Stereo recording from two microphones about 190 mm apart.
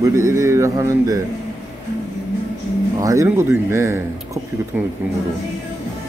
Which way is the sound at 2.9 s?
15° right (ahead or behind).